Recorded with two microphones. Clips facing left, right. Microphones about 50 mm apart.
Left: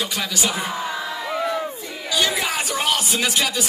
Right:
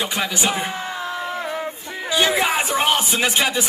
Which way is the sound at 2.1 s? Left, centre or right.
Right.